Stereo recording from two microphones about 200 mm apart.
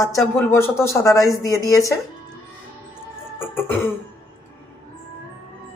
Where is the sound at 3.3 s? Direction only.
10° left (ahead or behind).